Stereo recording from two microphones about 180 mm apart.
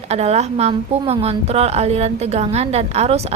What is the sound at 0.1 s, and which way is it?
A woman's voice, 35° right (ahead or behind).